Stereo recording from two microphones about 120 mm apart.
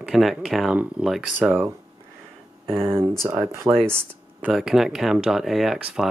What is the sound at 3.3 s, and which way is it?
Speech, 30° right (ahead or behind).